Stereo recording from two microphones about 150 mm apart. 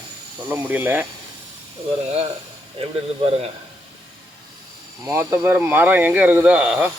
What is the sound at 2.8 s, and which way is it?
Speech, 40° right (ahead or behind).